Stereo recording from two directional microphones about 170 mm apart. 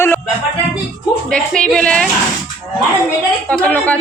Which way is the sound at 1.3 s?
5° left (ahead or behind).